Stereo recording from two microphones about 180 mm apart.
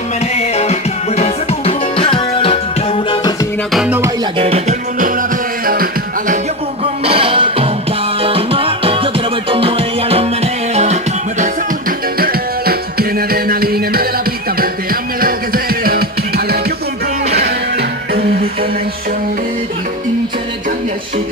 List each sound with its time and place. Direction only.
0.4 s music: 35° left (ahead or behind)
3.7 s music: 5° right (ahead or behind)
4.4 s music: 35° right (ahead or behind)
5.7 s music: 50° right (ahead or behind)
7.1 s music: 30° right (ahead or behind)
12.2 s music: 55° right (ahead or behind)